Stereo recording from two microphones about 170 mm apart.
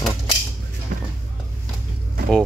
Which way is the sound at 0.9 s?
65° right (ahead or behind).